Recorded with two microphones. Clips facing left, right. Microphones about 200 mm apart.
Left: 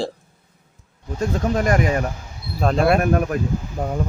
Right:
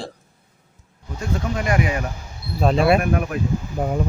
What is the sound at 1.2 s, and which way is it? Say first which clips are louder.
Speech: left 5 dB; 45° left (ahead or behind).